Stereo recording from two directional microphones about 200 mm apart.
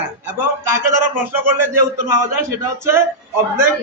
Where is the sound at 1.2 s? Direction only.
10° right (ahead or behind).